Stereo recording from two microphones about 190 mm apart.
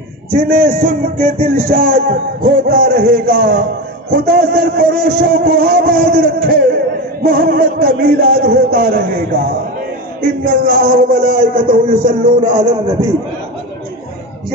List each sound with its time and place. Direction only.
0.3 s a man's voice: 50° right (ahead or behind)
11.7 s music: 45° right (ahead or behind)